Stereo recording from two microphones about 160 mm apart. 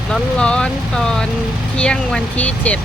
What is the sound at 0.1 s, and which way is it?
Speech, 5° left (ahead or behind).